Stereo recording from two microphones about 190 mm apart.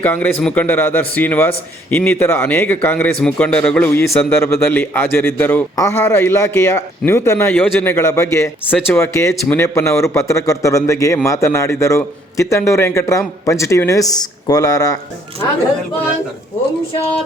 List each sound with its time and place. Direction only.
0.0 s a man's voice: 10° left (ahead or behind)